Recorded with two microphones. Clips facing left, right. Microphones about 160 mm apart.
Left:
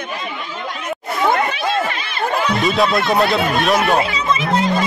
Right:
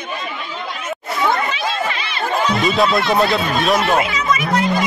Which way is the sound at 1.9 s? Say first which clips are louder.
Even; 45° left (ahead or behind).